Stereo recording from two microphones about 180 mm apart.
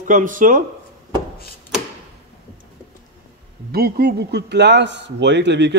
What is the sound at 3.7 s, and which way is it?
A man's voice, 60° right (ahead or behind).